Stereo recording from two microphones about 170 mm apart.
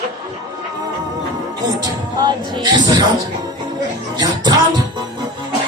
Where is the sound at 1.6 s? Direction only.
25° right (ahead or behind).